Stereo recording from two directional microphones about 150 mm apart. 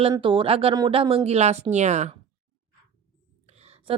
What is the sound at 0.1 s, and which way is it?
Speech, 35° right (ahead or behind).